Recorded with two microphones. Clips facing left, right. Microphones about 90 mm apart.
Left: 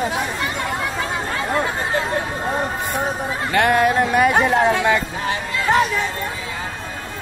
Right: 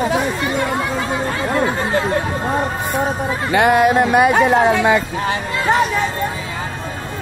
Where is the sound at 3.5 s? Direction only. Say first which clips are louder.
Right 3 dB; 10° right (ahead or behind).